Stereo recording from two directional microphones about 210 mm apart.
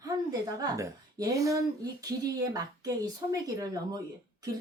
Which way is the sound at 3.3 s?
15° right (ahead or behind).